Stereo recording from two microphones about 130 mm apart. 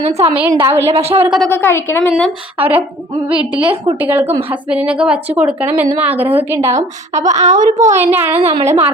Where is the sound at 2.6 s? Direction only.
15° right (ahead or behind).